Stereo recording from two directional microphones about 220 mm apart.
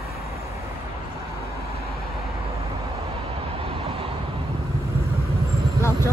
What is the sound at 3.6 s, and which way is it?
Vehicle, 25° right (ahead or behind).